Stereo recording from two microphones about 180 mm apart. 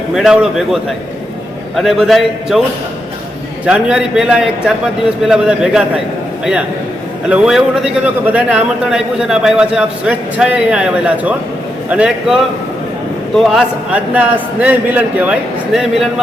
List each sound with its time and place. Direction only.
0.1 s a man's voice: centre (ahead or behind)
3.7 s a man's voice: 5° right (ahead or behind)
7.3 s a man's voice: 5° right (ahead or behind)